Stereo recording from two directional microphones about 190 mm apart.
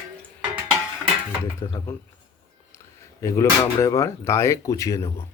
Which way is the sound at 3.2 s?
15° left (ahead or behind).